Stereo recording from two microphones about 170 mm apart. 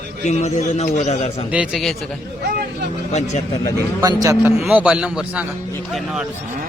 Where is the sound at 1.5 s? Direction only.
5° right (ahead or behind).